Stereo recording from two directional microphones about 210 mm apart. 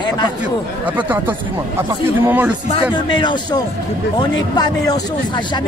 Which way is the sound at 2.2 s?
10° right (ahead or behind).